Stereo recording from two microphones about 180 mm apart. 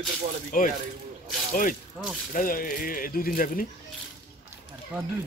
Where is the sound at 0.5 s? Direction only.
50° left (ahead or behind).